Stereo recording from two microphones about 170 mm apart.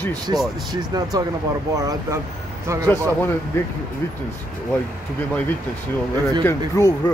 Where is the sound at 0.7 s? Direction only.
20° right (ahead or behind).